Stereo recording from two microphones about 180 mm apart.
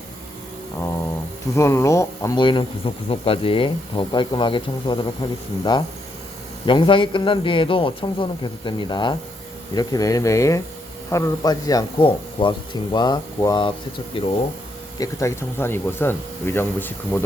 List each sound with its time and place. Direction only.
1.5 s speech: 15° left (ahead or behind)
14.9 s speech: 20° left (ahead or behind)